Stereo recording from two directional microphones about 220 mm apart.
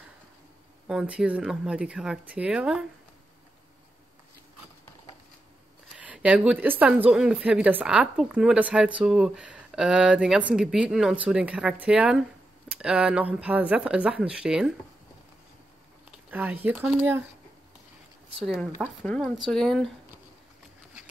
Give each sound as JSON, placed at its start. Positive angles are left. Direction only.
{"t": 0.8, "sound": "speech", "side_deg": -5}
{"t": 5.9, "sound": "speech", "side_deg": -5}
{"t": 16.1, "sound": "speech", "side_deg": -5}
{"t": 18.4, "sound": "speech", "side_deg": 0}